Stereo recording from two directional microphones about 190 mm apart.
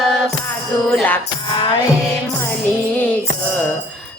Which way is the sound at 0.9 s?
5° left (ahead or behind).